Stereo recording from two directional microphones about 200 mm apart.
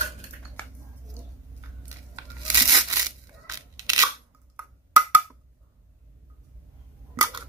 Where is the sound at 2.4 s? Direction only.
20° right (ahead or behind).